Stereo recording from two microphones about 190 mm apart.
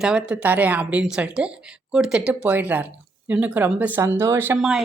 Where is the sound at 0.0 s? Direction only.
5° right (ahead or behind).